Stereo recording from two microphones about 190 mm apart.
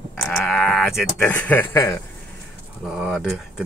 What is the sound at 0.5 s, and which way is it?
Speech, 5° left (ahead or behind).